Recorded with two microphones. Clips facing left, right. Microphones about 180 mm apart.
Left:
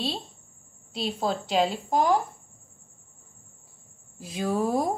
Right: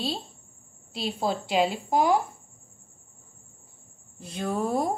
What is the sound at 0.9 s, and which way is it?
A woman's voice, centre (ahead or behind).